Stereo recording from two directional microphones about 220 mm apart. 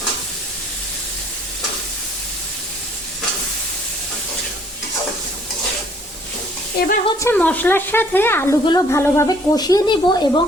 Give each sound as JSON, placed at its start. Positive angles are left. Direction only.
{"t": 6.7, "sound": "speech", "side_deg": 40}
{"t": 7.2, "sound": "a woman's voice", "side_deg": 10}